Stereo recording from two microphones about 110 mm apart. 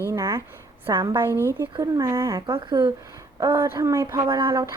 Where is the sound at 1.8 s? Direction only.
30° right (ahead or behind).